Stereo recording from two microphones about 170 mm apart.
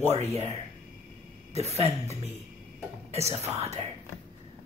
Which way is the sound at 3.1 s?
40° right (ahead or behind).